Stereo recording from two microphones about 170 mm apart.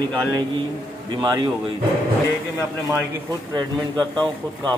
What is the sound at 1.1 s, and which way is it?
Speech, 25° right (ahead or behind).